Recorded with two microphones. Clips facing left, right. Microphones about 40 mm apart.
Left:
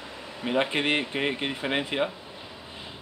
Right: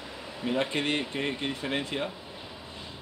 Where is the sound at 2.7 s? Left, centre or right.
Centre.